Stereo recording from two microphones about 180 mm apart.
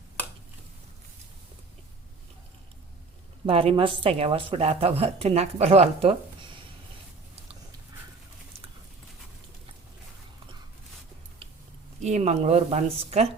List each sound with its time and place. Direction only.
3.4 s a woman's voice: 30° right (ahead or behind)
12.0 s a woman's voice: 40° right (ahead or behind)